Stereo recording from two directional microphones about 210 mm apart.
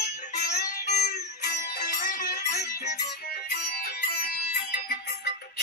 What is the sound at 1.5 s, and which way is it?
Music, 40° left (ahead or behind).